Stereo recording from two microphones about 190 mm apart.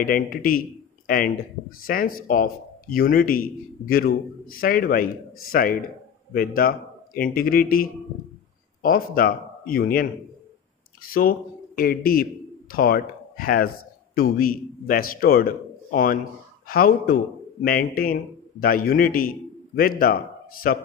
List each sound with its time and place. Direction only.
0.0 s a man's voice: 50° left (ahead or behind)
11.1 s a man's voice: 50° left (ahead or behind)